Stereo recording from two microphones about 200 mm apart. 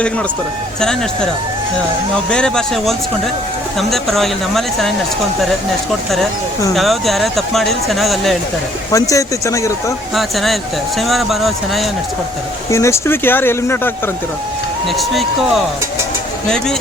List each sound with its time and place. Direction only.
0.8 s speech: 5° left (ahead or behind)
2.3 s speech: 5° left (ahead or behind)
6.7 s speech: centre (ahead or behind)
8.9 s speech: 15° left (ahead or behind)
10.2 s speech: centre (ahead or behind)
12.7 s speech: 15° left (ahead or behind)
14.8 s speech: centre (ahead or behind)